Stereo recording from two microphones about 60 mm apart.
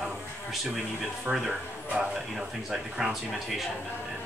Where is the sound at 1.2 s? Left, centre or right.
Centre.